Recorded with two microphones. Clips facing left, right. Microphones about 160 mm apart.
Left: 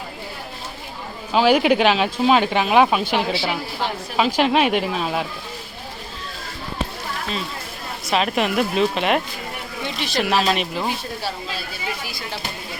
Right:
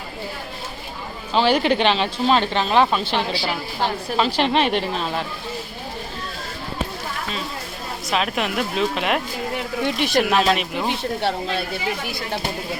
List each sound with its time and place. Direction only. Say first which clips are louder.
1.3 s speech: left 2 dB; 10° left (ahead or behind)
8.1 s a woman's voice: left 3 dB; centre (ahead or behind)
9.8 s speech: right 4 dB; 50° right (ahead or behind)
10.2 s a woman's voice: right 1 dB; centre (ahead or behind)
11.2 s speech: right 6 dB; 65° right (ahead or behind)